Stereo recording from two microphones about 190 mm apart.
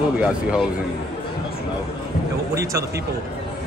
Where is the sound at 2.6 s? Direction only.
15° right (ahead or behind).